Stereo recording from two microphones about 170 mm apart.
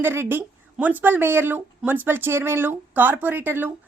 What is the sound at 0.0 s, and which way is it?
Speech, 15° right (ahead or behind).